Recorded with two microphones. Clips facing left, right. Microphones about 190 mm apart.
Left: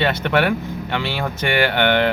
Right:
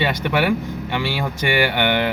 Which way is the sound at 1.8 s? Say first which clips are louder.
Left 3 dB; 55° left (ahead or behind).